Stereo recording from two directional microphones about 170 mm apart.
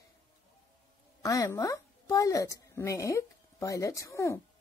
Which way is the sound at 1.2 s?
20° left (ahead or behind).